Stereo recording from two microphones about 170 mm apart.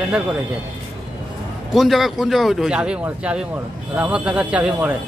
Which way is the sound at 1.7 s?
Centre (ahead or behind).